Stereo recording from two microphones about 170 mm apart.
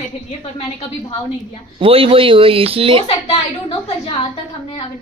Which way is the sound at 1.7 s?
35° right (ahead or behind).